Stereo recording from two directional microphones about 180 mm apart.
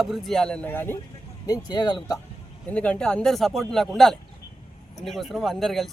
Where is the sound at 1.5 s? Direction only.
25° left (ahead or behind).